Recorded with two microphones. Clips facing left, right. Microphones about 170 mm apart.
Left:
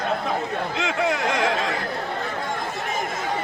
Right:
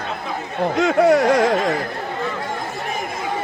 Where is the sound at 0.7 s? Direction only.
45° right (ahead or behind).